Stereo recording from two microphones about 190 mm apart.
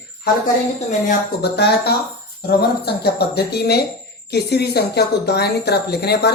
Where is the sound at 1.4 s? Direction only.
60° left (ahead or behind).